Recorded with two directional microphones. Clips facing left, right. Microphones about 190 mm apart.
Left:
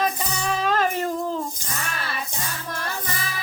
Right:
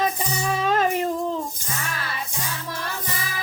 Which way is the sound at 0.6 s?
25° right (ahead or behind).